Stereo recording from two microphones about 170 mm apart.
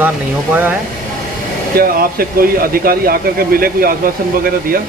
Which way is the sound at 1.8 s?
60° right (ahead or behind).